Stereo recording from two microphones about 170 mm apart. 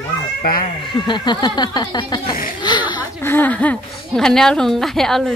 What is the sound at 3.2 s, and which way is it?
A woman's voice, 10° left (ahead or behind).